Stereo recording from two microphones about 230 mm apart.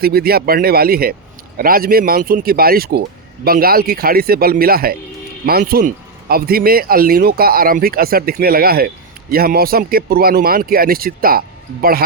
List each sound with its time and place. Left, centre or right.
0.0 s speech: right